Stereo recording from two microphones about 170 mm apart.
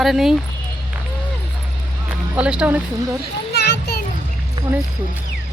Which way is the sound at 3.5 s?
70° left (ahead or behind).